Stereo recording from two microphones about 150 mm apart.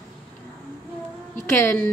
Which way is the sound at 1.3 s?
15° left (ahead or behind).